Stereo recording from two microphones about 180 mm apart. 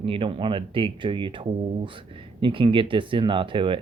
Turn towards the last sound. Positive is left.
turn(degrees=-30)  # may be behind; listen again after turning